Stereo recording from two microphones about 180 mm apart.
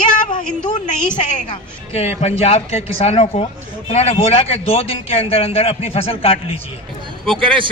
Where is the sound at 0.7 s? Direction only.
45° left (ahead or behind).